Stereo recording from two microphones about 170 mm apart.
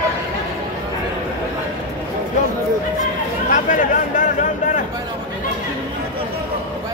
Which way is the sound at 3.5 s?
50° left (ahead or behind).